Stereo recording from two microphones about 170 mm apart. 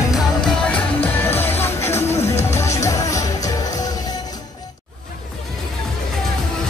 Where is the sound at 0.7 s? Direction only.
10° left (ahead or behind).